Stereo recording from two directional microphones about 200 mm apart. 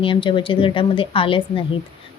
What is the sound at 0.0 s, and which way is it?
A woman's voice, 25° left (ahead or behind).